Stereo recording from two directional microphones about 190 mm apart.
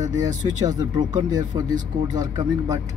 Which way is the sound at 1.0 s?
40° right (ahead or behind).